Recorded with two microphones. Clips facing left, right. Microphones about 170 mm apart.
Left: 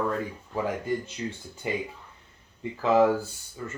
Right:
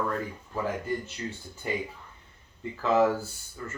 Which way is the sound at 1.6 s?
15° left (ahead or behind).